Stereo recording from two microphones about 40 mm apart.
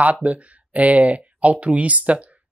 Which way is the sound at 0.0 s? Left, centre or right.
Right.